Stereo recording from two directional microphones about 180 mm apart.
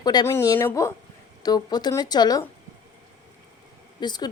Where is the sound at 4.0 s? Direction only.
25° left (ahead or behind).